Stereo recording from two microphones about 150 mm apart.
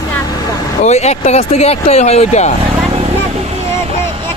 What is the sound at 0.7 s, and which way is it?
Speech, 50° left (ahead or behind).